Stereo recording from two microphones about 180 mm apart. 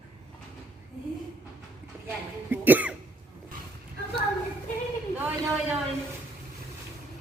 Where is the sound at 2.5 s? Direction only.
10° right (ahead or behind).